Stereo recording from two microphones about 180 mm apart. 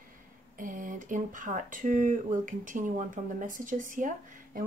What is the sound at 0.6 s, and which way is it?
A woman's voice, 45° right (ahead or behind).